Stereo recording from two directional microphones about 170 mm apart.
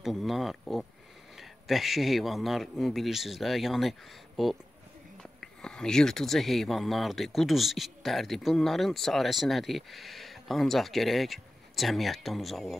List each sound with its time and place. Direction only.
0.0 s speech: centre (ahead or behind)